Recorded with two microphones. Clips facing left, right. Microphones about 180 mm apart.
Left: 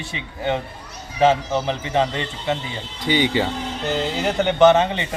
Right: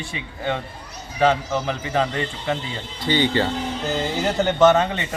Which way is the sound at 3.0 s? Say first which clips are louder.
Even; 15° left (ahead or behind).